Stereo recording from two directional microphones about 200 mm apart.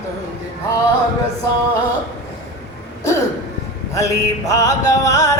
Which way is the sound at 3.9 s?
15° left (ahead or behind).